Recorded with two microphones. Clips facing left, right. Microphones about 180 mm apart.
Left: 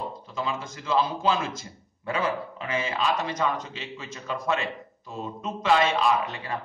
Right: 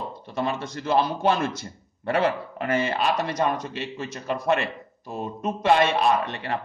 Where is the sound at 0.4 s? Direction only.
65° right (ahead or behind).